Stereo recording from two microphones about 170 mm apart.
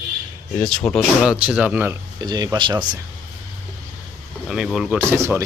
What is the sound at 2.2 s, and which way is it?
Speech, 25° right (ahead or behind).